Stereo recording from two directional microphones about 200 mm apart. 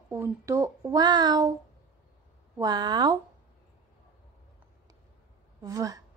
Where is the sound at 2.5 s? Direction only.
20° right (ahead or behind).